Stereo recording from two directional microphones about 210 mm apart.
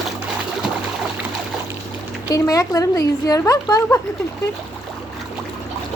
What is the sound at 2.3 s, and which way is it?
Speech, 15° left (ahead or behind).